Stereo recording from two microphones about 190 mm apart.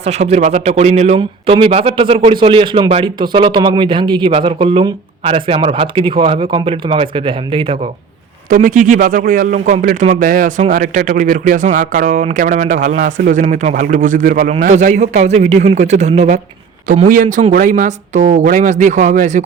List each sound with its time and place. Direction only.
0.0 s speech: 35° right (ahead or behind)
8.4 s speech: 45° right (ahead or behind)